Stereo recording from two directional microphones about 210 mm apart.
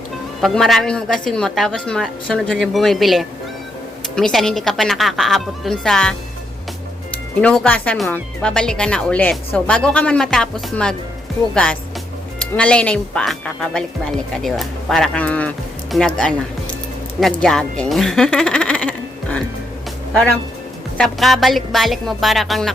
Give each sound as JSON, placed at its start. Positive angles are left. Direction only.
{"t": 0.4, "sound": "speech", "side_deg": 0}
{"t": 7.4, "sound": "speech", "side_deg": 5}
{"t": 17.4, "sound": "speech", "side_deg": 5}
{"t": 21.0, "sound": "speech", "side_deg": 0}